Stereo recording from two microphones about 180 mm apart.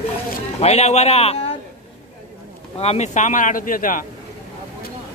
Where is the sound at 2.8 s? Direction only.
35° left (ahead or behind).